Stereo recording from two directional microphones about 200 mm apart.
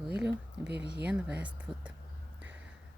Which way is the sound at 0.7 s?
55° right (ahead or behind).